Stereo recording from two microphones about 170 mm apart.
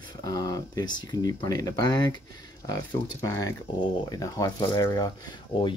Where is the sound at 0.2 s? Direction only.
20° left (ahead or behind).